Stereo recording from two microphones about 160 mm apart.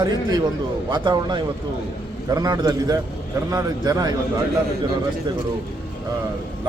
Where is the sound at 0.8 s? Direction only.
25° right (ahead or behind).